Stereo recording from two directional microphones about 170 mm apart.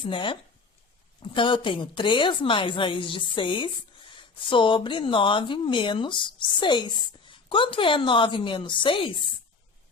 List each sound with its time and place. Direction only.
0.0 s speech: 30° left (ahead or behind)